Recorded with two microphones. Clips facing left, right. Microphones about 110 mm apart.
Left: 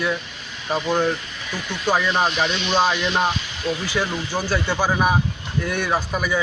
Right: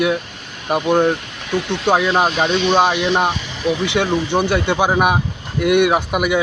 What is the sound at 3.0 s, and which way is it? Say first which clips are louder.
Speech: right 4 dB; 20° right (ahead or behind).